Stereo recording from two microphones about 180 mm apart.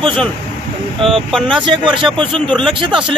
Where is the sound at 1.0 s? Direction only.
Centre (ahead or behind).